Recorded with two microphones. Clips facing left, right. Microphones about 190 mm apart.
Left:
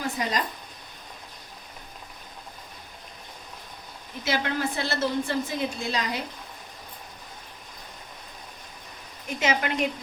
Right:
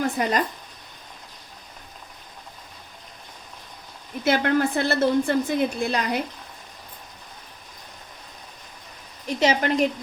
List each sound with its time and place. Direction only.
0.2 s a woman's voice: 55° right (ahead or behind)
4.2 s a woman's voice: 55° right (ahead or behind)
9.2 s speech: 35° right (ahead or behind)